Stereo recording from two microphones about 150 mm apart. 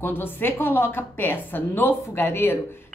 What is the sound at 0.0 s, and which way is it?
A woman's voice, 15° left (ahead or behind).